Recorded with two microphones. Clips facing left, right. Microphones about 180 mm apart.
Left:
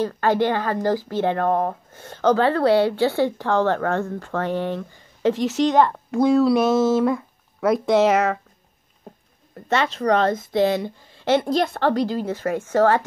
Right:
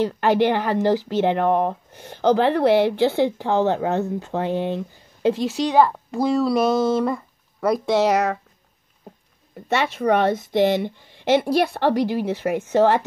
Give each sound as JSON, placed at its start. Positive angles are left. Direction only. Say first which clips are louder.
{"t": 0.0, "sound": "speech", "louder": "right 2 dB", "side_deg": -15}
{"t": 9.7, "sound": "speech", "louder": "even", "side_deg": -10}